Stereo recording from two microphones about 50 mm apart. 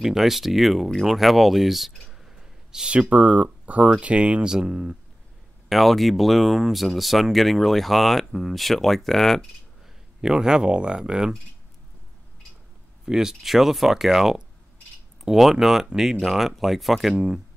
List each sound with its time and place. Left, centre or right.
0.0 s speech: centre
2.2 s a sound: centre
2.9 s speech: right
5.7 s speech: centre
10.2 s speech: centre
13.0 s speech: centre